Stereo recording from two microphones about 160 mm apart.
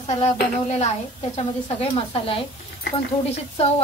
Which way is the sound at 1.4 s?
40° left (ahead or behind).